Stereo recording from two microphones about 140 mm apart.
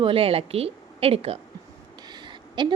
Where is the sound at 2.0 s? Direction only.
30° right (ahead or behind).